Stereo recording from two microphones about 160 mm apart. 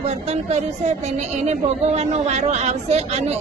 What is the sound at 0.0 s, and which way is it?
A woman's voice, 45° right (ahead or behind).